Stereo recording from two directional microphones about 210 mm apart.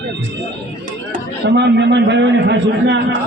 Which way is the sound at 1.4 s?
55° right (ahead or behind).